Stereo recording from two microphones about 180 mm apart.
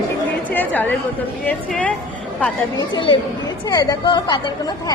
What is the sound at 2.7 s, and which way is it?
A woman's voice, 25° left (ahead or behind).